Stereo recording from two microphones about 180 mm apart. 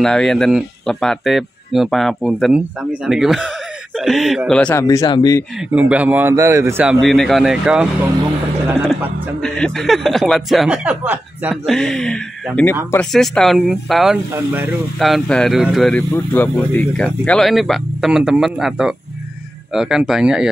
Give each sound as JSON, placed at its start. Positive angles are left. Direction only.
{"t": 0.0, "sound": "speech", "side_deg": 5}
{"t": 4.7, "sound": "speech", "side_deg": 20}
{"t": 5.7, "sound": "a man's voice", "side_deg": -10}
{"t": 9.4, "sound": "speech", "side_deg": 5}
{"t": 11.6, "sound": "speech", "side_deg": 0}
{"t": 16.1, "sound": "speech", "side_deg": 10}